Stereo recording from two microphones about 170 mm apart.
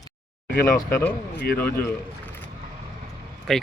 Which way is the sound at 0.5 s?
55° left (ahead or behind).